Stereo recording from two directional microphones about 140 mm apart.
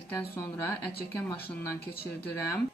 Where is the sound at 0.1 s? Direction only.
15° left (ahead or behind).